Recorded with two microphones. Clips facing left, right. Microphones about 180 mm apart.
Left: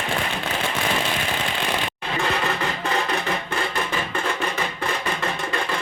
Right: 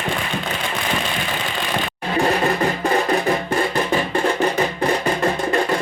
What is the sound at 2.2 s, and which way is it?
Music, 40° right (ahead or behind).